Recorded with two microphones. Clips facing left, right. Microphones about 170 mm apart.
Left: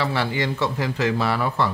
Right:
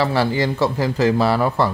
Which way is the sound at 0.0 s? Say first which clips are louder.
Right 5 dB; 40° right (ahead or behind).